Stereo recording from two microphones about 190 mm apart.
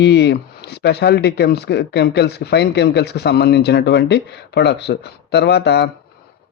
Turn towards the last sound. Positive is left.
turn(degrees=60)  # may be behind; listen again after turning